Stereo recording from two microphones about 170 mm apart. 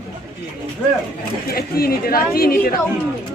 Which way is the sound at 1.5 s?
60° left (ahead or behind).